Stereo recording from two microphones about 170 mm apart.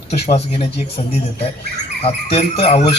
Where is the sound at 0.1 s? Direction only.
40° left (ahead or behind).